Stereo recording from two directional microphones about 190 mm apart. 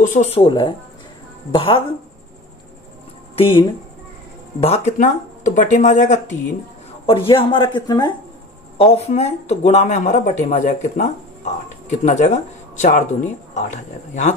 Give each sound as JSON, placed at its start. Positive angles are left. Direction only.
{"t": 0.0, "sound": "speech", "side_deg": 40}
{"t": 4.6, "sound": "speech", "side_deg": 30}
{"t": 7.1, "sound": "speech", "side_deg": 30}
{"t": 8.7, "sound": "speech", "side_deg": 30}